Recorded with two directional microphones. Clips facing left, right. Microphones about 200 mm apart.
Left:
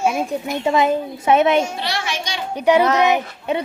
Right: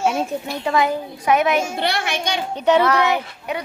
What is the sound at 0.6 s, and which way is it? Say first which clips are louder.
A woman's voice: left 3 dB; 25° left (ahead or behind).